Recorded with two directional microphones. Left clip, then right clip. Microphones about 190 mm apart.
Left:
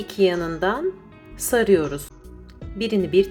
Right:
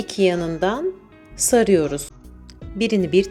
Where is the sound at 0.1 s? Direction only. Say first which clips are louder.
Right 1 dB; 20° right (ahead or behind).